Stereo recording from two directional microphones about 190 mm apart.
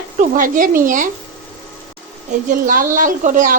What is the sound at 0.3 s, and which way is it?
Speech, 45° right (ahead or behind).